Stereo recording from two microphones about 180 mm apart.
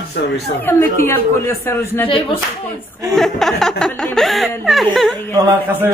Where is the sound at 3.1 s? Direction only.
Centre (ahead or behind).